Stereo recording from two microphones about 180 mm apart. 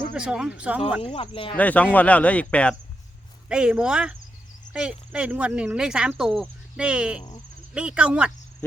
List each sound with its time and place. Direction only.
0.1 s speech: 5° right (ahead or behind)
1.0 s speech: 30° left (ahead or behind)
1.5 s speech: 10° left (ahead or behind)
3.5 s speech: 5° right (ahead or behind)